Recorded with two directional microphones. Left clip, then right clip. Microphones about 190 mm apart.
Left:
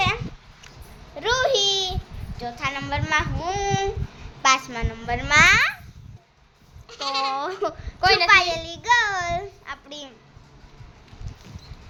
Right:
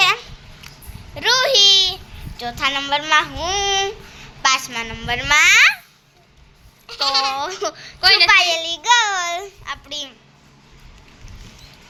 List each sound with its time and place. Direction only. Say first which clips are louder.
1.1 s a sound: right 6 dB; 20° left (ahead or behind)
2.4 s child singing: right 7 dB; 5° right (ahead or behind)
4.4 s a woman's voice: right 2 dB; 25° left (ahead or behind)
5.0 s child singing: right 2 dB; centre (ahead or behind)
6.8 s goat: right 6 dB; 25° right (ahead or behind)
7.3 s speech: right 3 dB; 10° left (ahead or behind)
8.3 s child singing: right 3 dB; 5° left (ahead or behind)
9.6 s a child's voice: right 8 dB; 15° left (ahead or behind)